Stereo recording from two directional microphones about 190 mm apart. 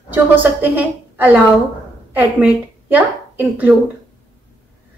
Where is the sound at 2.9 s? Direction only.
10° right (ahead or behind).